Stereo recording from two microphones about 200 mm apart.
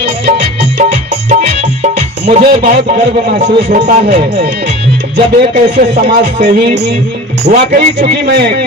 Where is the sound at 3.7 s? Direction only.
45° right (ahead or behind).